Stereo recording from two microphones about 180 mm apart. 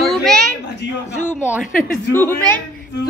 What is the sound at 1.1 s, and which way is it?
A woman's voice, 15° left (ahead or behind).